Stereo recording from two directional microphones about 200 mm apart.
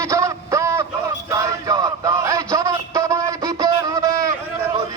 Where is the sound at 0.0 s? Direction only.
15° right (ahead or behind).